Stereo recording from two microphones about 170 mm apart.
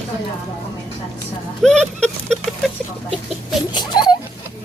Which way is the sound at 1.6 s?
5° left (ahead or behind).